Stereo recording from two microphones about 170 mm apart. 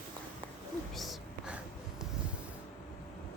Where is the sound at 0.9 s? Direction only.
Centre (ahead or behind).